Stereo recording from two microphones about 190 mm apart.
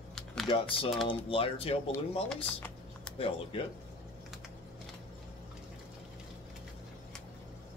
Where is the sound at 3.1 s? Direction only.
30° left (ahead or behind).